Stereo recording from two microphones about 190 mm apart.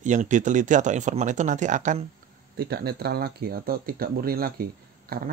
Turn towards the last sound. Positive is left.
turn(degrees=-50)  # may be behind; listen again after turning